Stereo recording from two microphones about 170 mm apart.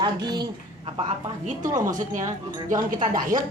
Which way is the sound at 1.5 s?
50° right (ahead or behind).